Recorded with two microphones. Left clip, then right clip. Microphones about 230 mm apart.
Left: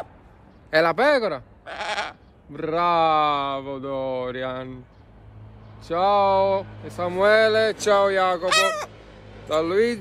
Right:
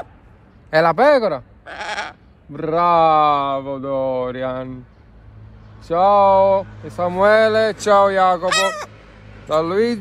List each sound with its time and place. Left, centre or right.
0.7 s speech: centre
1.6 s sheep: centre
2.5 s speech: centre
5.8 s speech: centre
8.5 s fowl: centre
8.9 s a sound: left
9.5 s speech: centre